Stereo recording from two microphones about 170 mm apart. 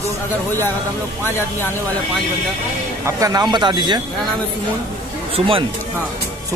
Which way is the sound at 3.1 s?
20° right (ahead or behind).